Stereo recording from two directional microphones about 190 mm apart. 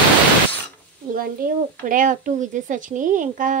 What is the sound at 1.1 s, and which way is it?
Speech, 45° right (ahead or behind).